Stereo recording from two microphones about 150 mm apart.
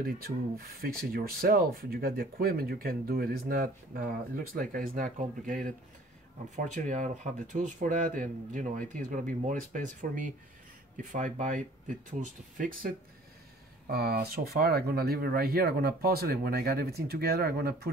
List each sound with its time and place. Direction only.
0.0 s speech: 85° right; by 12.9 s 65° right (ahead or behind)
13.8 s speech: 90° right